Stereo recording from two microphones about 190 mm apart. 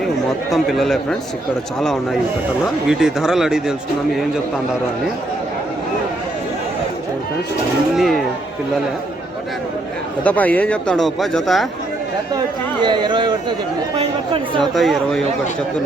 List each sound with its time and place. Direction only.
0.5 s speech: centre (ahead or behind)
2.8 s speech: 5° right (ahead or behind)
7.9 s speech: centre (ahead or behind)
10.2 s speech: 10° left (ahead or behind)
12.8 s speech: 25° right (ahead or behind)
14.6 s speech: centre (ahead or behind)